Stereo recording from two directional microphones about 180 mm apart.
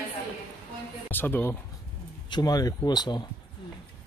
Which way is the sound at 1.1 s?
10° left (ahead or behind).